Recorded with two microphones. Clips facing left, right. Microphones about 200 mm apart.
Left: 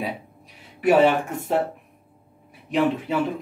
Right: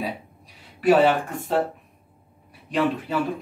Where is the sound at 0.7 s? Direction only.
20° left (ahead or behind).